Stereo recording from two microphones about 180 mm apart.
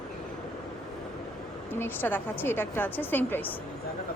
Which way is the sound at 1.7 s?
10° left (ahead or behind).